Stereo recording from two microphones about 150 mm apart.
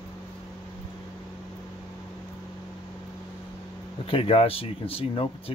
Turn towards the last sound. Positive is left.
turn(degrees=40)  # may be behind; listen again after turning